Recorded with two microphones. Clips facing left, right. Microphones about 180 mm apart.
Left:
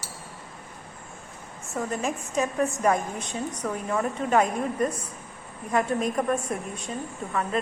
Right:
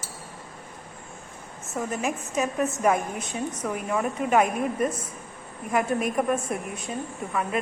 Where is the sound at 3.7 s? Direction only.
10° right (ahead or behind).